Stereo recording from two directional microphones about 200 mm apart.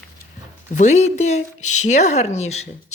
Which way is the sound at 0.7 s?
35° left (ahead or behind).